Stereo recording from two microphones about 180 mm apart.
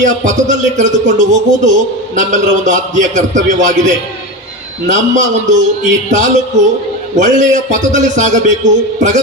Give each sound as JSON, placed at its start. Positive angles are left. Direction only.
{"t": 0.0, "sound": "a man's voice", "side_deg": -45}